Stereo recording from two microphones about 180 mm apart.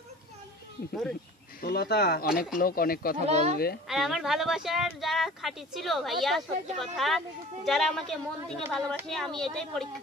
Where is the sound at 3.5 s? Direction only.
60° left (ahead or behind).